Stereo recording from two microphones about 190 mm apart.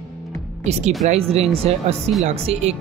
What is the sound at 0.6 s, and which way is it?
Speech, 35° right (ahead or behind).